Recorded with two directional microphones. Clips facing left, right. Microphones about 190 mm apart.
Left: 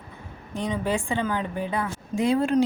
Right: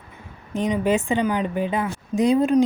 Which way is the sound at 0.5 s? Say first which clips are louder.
Right 6 dB; 20° right (ahead or behind).